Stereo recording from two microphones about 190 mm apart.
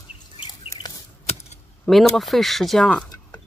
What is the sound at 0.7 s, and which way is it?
Chicken, 20° left (ahead or behind).